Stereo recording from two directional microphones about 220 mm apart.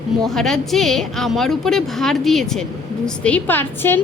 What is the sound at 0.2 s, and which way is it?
A woman's voice, centre (ahead or behind).